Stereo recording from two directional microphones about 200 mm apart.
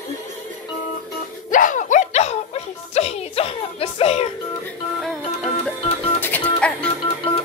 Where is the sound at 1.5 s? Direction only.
40° left (ahead or behind).